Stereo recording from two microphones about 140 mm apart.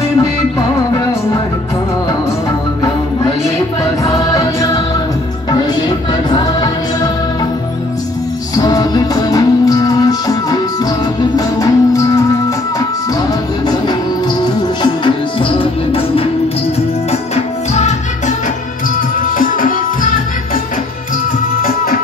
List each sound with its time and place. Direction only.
0.2 s music: 25° left (ahead or behind)
4.0 s music: 25° left (ahead or behind)
8.5 s music: 25° left (ahead or behind)
14.4 s music: 35° left (ahead or behind)
19.3 s music: 75° left (ahead or behind)